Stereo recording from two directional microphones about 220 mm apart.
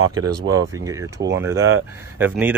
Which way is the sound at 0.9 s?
15° right (ahead or behind).